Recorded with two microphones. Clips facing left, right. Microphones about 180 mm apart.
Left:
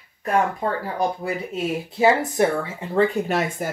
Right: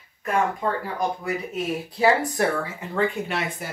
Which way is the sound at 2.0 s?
20° left (ahead or behind).